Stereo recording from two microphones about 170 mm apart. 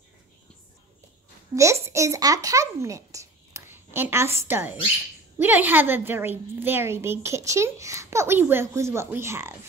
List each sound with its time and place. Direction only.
1.5 s a child's voice: 15° right (ahead or behind)